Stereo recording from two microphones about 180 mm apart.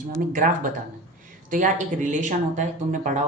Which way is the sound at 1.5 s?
45° right (ahead or behind).